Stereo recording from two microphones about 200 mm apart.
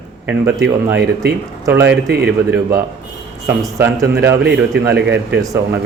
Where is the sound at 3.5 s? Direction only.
15° right (ahead or behind).